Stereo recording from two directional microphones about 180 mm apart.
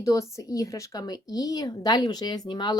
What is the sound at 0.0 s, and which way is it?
A woman's voice, 15° left (ahead or behind).